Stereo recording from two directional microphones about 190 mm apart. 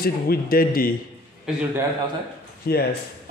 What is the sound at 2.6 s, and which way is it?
Speech, 55° left (ahead or behind).